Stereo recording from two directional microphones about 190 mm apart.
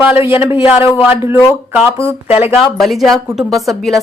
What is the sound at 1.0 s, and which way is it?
A woman's voice, 10° right (ahead or behind).